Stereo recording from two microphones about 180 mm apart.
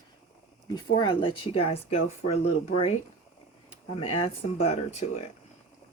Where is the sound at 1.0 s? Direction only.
25° left (ahead or behind).